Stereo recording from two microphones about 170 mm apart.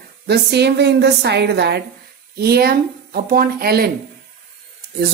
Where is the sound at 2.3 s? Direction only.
65° right (ahead or behind).